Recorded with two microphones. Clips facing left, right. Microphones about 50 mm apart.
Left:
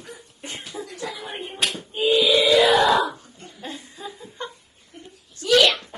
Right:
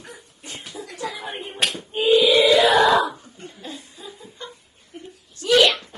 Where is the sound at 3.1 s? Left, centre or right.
Right.